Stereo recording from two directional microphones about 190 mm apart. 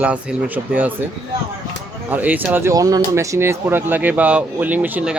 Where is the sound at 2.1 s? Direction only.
10° right (ahead or behind).